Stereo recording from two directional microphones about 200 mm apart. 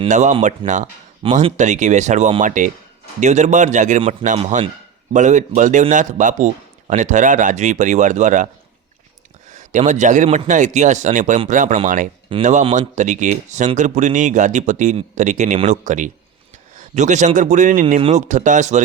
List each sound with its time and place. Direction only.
0.0 s speech: 35° right (ahead or behind)
9.5 s speech: 40° right (ahead or behind)